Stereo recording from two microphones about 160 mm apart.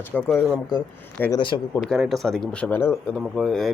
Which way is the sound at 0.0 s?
10° left (ahead or behind).